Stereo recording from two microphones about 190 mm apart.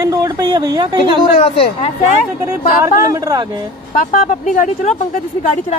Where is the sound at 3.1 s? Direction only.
20° right (ahead or behind).